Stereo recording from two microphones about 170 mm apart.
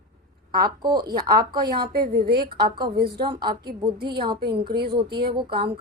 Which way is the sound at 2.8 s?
70° right (ahead or behind).